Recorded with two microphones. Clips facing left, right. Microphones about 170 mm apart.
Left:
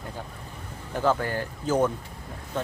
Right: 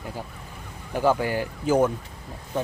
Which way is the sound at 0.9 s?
10° right (ahead or behind).